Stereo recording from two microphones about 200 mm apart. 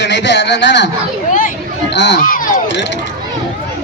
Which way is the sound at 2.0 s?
50° left (ahead or behind).